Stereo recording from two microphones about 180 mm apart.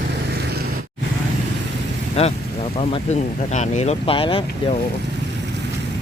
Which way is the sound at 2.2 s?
35° left (ahead or behind).